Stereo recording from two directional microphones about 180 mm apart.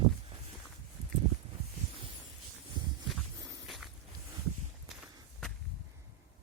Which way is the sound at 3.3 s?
20° right (ahead or behind).